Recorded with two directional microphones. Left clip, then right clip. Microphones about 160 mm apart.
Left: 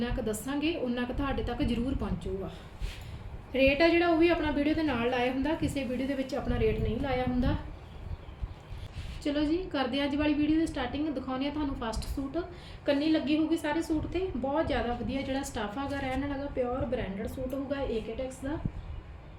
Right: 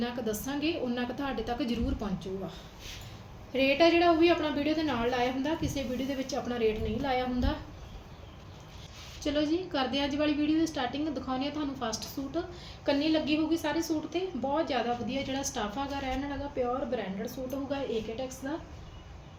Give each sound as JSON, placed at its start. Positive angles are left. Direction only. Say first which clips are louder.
{"t": 0.0, "sound": "a woman's voice", "louder": "even", "side_deg": 10}
{"t": 3.5, "sound": "a woman's voice", "louder": "even", "side_deg": 15}
{"t": 9.2, "sound": "a woman's voice", "louder": "even", "side_deg": 10}